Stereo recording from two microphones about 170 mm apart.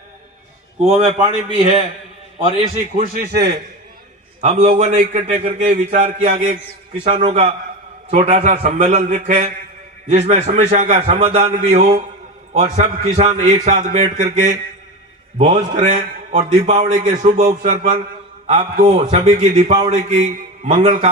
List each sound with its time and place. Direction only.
0.9 s a man's voice: 35° right (ahead or behind)
2.7 s speech: 50° right (ahead or behind)
4.4 s a man's voice: 40° right (ahead or behind)
6.9 s a man's voice: 35° right (ahead or behind)